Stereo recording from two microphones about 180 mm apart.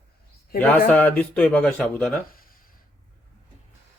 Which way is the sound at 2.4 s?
55° left (ahead or behind).